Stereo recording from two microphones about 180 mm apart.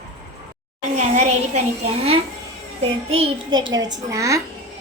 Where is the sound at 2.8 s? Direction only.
35° right (ahead or behind); by 4.4 s 15° right (ahead or behind).